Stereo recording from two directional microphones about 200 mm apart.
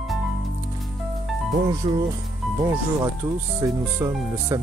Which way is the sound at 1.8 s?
25° right (ahead or behind).